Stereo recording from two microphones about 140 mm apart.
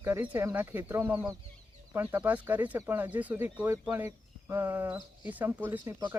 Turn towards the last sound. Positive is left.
turn(degrees=-15)  # may be behind; listen again after turning